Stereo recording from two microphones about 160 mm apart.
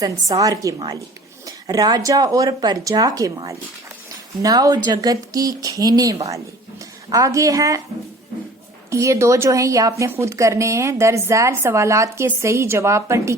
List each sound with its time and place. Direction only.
0.0 s speech: 20° right (ahead or behind)
8.9 s a woman's voice: 20° right (ahead or behind)